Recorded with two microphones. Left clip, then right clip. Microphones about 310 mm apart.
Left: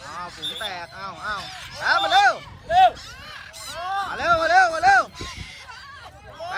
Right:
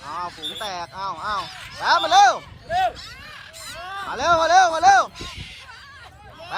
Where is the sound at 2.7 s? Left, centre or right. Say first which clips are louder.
Left 6 dB; left.